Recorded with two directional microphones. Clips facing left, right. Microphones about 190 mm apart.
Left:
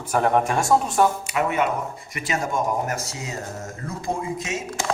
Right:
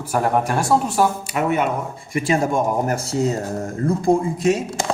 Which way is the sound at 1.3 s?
40° right (ahead or behind).